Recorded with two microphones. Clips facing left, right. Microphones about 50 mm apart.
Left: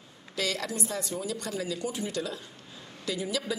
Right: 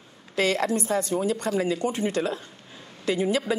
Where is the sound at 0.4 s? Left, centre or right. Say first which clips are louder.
Right 8 dB; right.